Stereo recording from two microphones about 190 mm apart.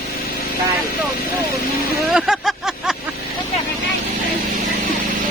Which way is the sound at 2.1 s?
Centre (ahead or behind).